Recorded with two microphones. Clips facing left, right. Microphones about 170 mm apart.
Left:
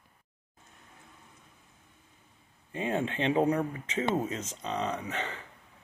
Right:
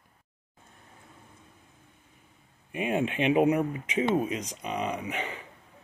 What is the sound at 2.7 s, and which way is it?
Speech, 15° right (ahead or behind).